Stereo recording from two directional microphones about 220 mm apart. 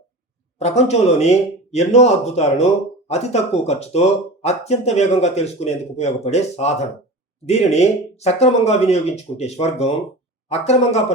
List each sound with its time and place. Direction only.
0.6 s speech: 30° left (ahead or behind)